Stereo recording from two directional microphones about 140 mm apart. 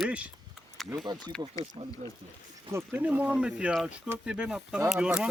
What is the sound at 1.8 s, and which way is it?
Speech, 40° right (ahead or behind).